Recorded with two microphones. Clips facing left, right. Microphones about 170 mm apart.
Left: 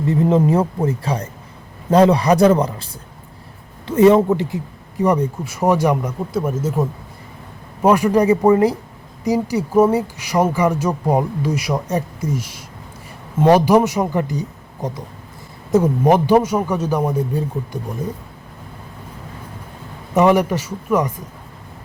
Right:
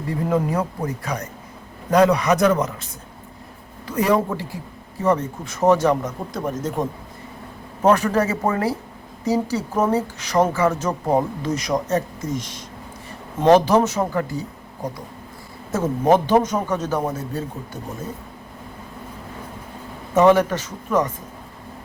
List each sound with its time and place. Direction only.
0.1 s a man's voice: 25° left (ahead or behind)
20.1 s speech: 10° left (ahead or behind)